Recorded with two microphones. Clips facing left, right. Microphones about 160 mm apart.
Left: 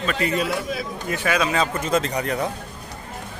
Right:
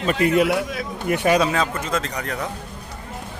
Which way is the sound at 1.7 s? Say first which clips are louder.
Left 3 dB; 20° left (ahead or behind).